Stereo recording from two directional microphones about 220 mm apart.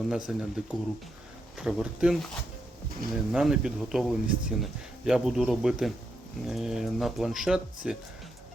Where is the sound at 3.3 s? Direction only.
Centre (ahead or behind).